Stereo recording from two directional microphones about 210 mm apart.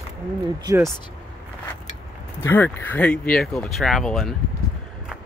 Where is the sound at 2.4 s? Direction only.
10° left (ahead or behind).